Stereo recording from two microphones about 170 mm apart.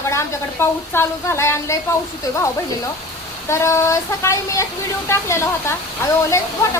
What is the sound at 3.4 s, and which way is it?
A woman's voice, 15° left (ahead or behind).